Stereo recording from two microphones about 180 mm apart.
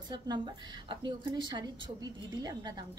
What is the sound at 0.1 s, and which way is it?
A woman's voice, 25° right (ahead or behind).